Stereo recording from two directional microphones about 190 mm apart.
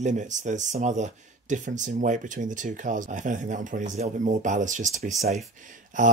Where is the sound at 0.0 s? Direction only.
40° right (ahead or behind).